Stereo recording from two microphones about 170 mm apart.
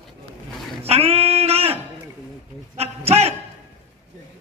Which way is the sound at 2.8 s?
35° right (ahead or behind).